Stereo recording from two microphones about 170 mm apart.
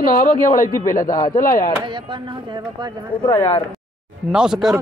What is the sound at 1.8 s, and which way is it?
A man's voice, 25° right (ahead or behind).